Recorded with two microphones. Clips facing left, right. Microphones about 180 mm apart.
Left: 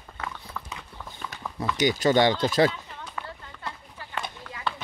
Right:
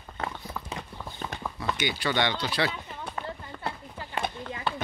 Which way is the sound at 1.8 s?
40° left (ahead or behind).